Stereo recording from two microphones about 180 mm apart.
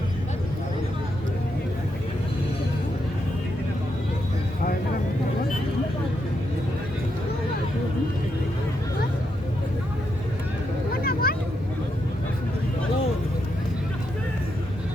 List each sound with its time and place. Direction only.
11.0 s vehicle: 55° left (ahead or behind)